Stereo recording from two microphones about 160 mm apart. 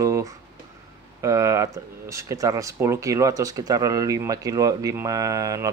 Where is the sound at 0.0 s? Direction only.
20° right (ahead or behind).